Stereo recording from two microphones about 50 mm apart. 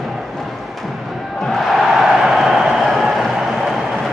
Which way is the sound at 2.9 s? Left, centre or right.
Centre.